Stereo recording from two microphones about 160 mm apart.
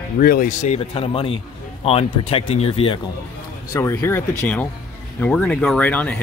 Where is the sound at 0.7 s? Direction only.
35° left (ahead or behind).